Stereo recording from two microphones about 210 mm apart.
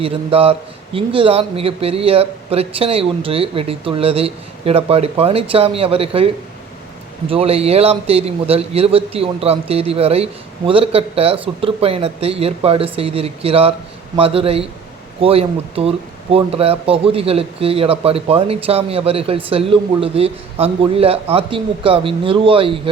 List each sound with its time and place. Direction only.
0.0 s speech: 25° right (ahead or behind)